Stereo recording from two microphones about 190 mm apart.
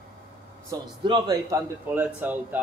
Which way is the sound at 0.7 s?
25° right (ahead or behind).